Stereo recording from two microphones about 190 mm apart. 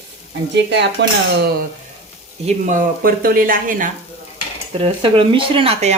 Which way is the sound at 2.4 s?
40° right (ahead or behind).